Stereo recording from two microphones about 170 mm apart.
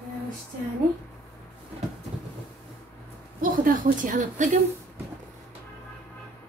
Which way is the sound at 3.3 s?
55° right (ahead or behind).